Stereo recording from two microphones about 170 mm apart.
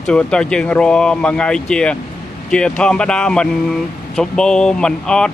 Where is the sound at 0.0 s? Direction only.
5° left (ahead or behind).